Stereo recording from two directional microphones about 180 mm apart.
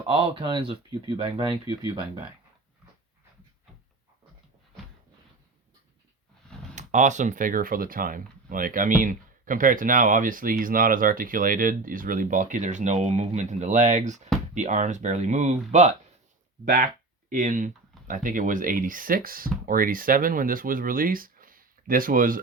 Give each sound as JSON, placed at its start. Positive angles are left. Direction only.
{"t": 0.1, "sound": "speech", "side_deg": -30}
{"t": 1.5, "sound": "speech", "side_deg": 25}
{"t": 6.7, "sound": "speech", "side_deg": -40}
{"t": 17.2, "sound": "speech", "side_deg": -45}